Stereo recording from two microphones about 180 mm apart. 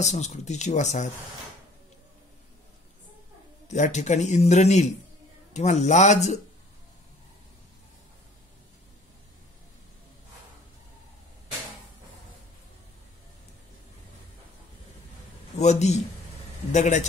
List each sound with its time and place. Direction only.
0.0 s a man's voice: 40° left (ahead or behind)
3.6 s a man's voice: 40° left (ahead or behind)
15.5 s a man's voice: 40° left (ahead or behind)